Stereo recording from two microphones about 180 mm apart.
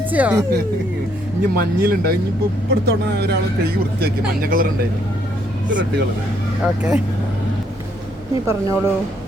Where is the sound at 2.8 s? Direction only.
65° right (ahead or behind).